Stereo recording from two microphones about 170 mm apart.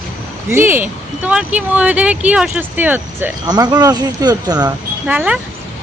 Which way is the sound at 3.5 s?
25° right (ahead or behind).